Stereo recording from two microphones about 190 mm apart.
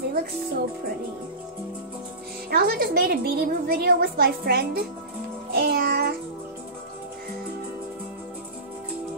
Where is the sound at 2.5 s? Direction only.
50° right (ahead or behind).